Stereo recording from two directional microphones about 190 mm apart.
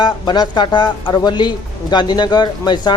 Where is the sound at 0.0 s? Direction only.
25° left (ahead or behind).